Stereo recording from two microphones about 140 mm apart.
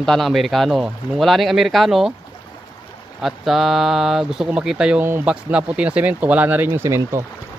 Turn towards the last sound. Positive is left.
turn(degrees=-20)  # may be behind; listen again after turning